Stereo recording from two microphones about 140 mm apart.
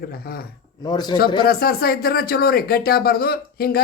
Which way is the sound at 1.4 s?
90° left.